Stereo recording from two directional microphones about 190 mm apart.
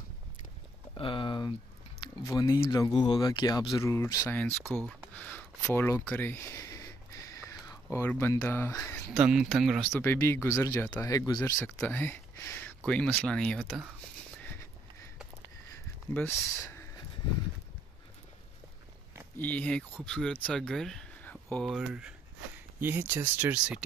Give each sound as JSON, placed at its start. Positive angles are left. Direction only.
{"t": 0.9, "sound": "speech", "side_deg": 25}
{"t": 6.0, "sound": "a sound", "side_deg": 10}
{"t": 9.2, "sound": "speech", "side_deg": -5}
{"t": 14.4, "sound": "a sound", "side_deg": 10}
{"t": 16.1, "sound": "speech", "side_deg": 10}
{"t": 19.3, "sound": "speech", "side_deg": 10}